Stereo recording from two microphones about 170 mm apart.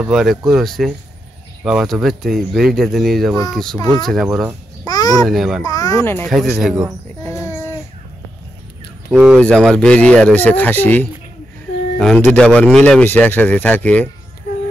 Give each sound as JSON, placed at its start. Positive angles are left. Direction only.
{"t": 0.0, "sound": "speech", "side_deg": 0}
{"t": 4.8, "sound": "a child's voice", "side_deg": 20}
{"t": 5.2, "sound": "speech", "side_deg": 0}
{"t": 5.7, "sound": "speech", "side_deg": 20}
{"t": 6.2, "sound": "speech", "side_deg": 0}
{"t": 7.2, "sound": "a sound", "side_deg": 15}
{"t": 9.1, "sound": "speech", "side_deg": -10}
{"t": 9.4, "sound": "speech", "side_deg": 5}
{"t": 12.2, "sound": "speech", "side_deg": 5}